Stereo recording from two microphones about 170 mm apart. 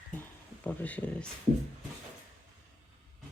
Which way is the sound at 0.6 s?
10° left (ahead or behind).